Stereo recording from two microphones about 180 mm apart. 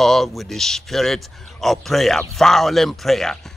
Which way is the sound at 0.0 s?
Centre (ahead or behind).